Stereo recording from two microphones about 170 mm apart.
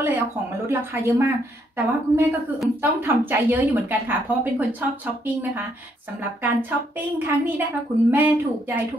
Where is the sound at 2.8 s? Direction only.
10° right (ahead or behind).